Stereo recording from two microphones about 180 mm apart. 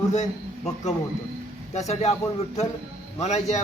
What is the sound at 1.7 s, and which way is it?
Speech, 40° left (ahead or behind).